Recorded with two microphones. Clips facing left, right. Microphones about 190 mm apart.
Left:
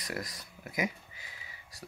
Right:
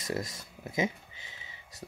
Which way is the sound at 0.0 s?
25° right (ahead or behind).